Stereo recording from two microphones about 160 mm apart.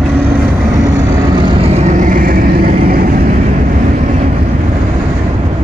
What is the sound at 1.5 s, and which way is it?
Vehicle, 40° right (ahead or behind).